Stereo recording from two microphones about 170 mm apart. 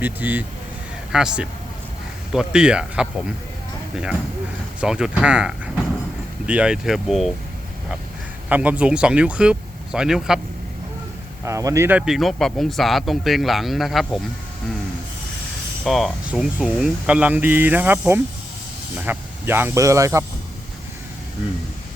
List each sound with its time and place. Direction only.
0.0 s speech: 10° right (ahead or behind)
8.4 s speech: 10° right (ahead or behind)
11.4 s speech: 20° right (ahead or behind); by 14.2 s centre (ahead or behind)
15.8 s speech: centre (ahead or behind); by 20.2 s 15° right (ahead or behind)